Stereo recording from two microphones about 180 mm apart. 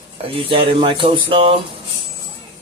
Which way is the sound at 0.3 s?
30° right (ahead or behind).